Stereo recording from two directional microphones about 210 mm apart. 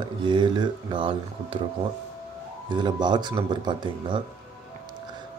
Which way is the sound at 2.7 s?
20° right (ahead or behind).